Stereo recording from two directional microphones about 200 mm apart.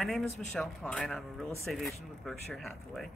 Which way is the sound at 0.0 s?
5° left (ahead or behind).